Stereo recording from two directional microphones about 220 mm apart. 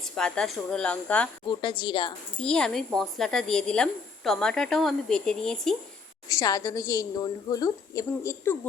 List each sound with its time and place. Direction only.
0.0 s a woman's voice: 5° left (ahead or behind)
1.5 s a woman's voice: 20° left (ahead or behind)
2.4 s a woman's voice: 5° left (ahead or behind)
6.2 s a woman's voice: 15° left (ahead or behind)